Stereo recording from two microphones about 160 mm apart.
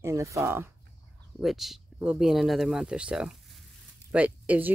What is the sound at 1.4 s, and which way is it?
Speech, centre (ahead or behind).